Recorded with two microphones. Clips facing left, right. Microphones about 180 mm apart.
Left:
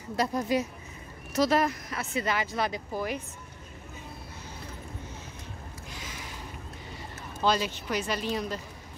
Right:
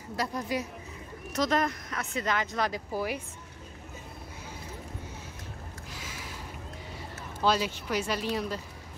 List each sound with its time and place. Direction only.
0.1 s a woman's voice: 25° left (ahead or behind)
1.3 s speech: 5° left (ahead or behind)
2.9 s speech: 10° right (ahead or behind)
5.9 s a sound: 5° right (ahead or behind)
7.4 s speech: 5° right (ahead or behind)